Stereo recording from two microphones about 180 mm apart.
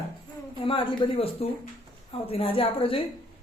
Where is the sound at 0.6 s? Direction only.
30° left (ahead or behind).